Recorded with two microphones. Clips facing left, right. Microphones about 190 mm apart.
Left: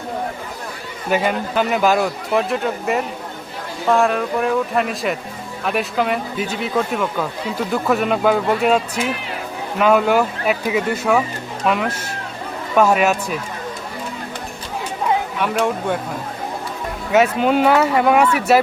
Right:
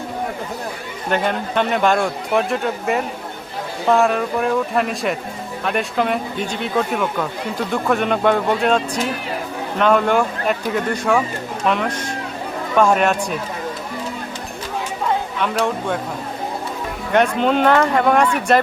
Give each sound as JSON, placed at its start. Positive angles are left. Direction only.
{"t": 1.1, "sound": "speech", "side_deg": 5}
{"t": 17.1, "sound": "speech", "side_deg": 5}